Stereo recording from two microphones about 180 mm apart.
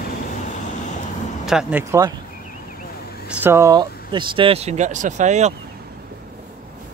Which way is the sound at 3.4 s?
15° right (ahead or behind).